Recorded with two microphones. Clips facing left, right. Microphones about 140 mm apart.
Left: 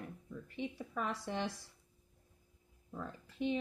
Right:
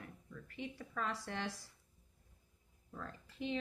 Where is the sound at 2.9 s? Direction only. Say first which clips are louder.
Left 5 dB; 20° left (ahead or behind).